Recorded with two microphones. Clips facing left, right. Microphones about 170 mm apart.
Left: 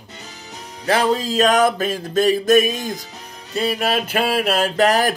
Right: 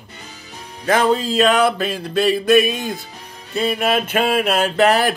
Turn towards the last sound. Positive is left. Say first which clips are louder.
# right 1 dB
turn(degrees=40)  # may be behind; listen again after turning